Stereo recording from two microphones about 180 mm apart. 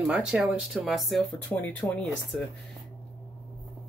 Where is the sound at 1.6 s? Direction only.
10° left (ahead or behind).